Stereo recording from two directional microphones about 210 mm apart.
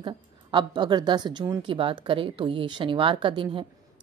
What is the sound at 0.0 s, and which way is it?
A woman's voice, 20° right (ahead or behind).